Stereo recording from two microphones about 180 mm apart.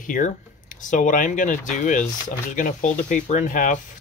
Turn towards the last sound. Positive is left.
turn(degrees=45)  # may be behind; listen again after turning